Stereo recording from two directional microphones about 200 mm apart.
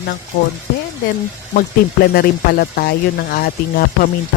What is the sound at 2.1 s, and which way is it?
Speech, 50° left (ahead or behind).